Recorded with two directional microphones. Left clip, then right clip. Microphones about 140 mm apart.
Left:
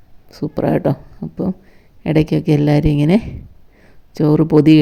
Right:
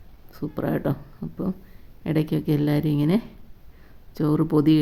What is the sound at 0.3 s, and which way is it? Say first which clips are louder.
Speech: left 9 dB; 40° left (ahead or behind).